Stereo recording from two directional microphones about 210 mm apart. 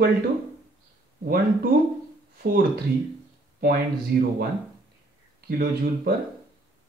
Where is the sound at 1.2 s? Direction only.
45° right (ahead or behind).